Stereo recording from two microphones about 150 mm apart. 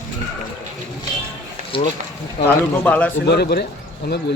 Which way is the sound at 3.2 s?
90° left.